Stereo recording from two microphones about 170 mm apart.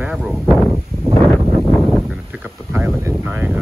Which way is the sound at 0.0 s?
5° right (ahead or behind).